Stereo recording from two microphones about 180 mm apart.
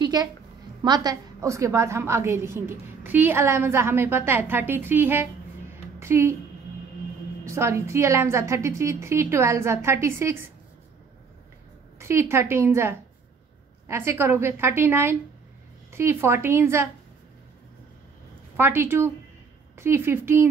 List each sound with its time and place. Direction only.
0.0 s a sound: 20° right (ahead or behind)
0.8 s a woman's voice: 20° right (ahead or behind)
7.4 s a woman's voice: 15° right (ahead or behind)
12.0 s a woman's voice: 15° right (ahead or behind)
18.6 s a woman's voice: 10° right (ahead or behind)